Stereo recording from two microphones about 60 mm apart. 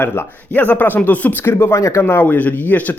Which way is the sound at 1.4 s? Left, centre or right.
Left.